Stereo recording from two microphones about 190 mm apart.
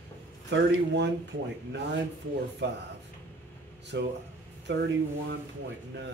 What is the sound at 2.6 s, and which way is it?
Speech, 65° right (ahead or behind).